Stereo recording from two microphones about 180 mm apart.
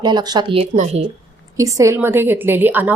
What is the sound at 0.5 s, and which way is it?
Speech, 40° right (ahead or behind).